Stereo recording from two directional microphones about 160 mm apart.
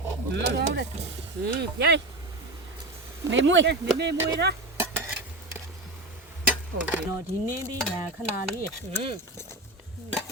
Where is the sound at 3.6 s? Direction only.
90° right.